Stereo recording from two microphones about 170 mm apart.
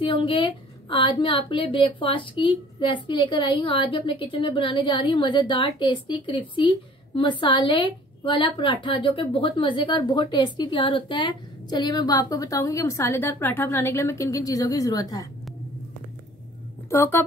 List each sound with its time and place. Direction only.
0.0 s a woman's voice: 30° left (ahead or behind)
16.9 s speech: 15° left (ahead or behind)